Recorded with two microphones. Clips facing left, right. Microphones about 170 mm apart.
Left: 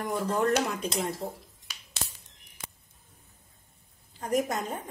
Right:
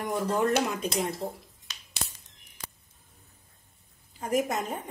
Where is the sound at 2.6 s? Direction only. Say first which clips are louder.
Even; 25° left (ahead or behind).